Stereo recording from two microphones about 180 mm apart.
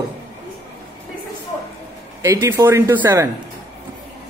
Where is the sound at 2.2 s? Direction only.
15° right (ahead or behind).